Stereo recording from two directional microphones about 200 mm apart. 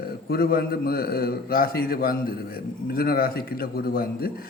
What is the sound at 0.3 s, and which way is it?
A man's voice, 50° left (ahead or behind).